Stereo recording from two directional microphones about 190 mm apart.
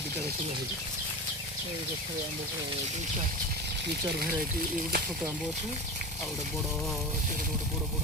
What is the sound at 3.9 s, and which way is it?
Speech, 55° right (ahead or behind).